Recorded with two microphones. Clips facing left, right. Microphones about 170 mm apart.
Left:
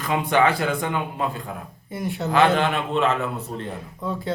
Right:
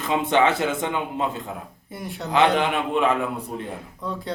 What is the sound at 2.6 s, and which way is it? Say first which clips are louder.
Speech: even; 15° right (ahead or behind).